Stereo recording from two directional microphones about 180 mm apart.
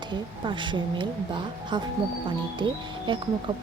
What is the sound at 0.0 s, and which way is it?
A woman's voice, 25° right (ahead or behind).